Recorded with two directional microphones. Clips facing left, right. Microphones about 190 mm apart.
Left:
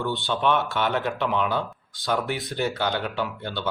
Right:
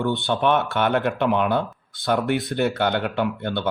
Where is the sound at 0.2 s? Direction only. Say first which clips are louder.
Right 3 dB; 55° right (ahead or behind).